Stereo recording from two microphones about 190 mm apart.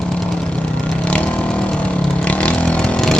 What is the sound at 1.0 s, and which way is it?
Vehicle, 5° left (ahead or behind).